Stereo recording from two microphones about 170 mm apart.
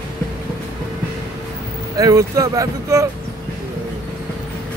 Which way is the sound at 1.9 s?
20° right (ahead or behind).